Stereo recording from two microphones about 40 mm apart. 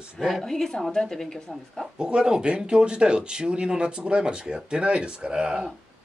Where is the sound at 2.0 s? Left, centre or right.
Right.